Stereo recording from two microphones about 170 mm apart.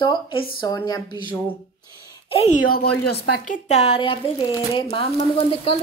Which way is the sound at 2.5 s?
60° left (ahead or behind).